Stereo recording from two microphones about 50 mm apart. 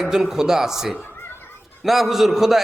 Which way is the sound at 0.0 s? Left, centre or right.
Centre.